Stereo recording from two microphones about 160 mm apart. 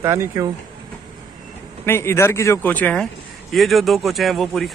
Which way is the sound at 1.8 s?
15° left (ahead or behind).